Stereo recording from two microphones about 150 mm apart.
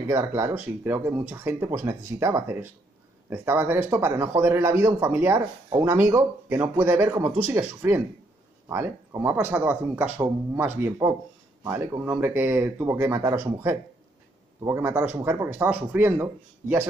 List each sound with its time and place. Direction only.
0.1 s speech: 20° right (ahead or behind)